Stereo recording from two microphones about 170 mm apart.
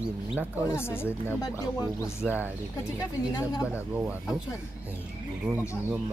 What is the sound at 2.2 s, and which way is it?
Speech, 10° right (ahead or behind).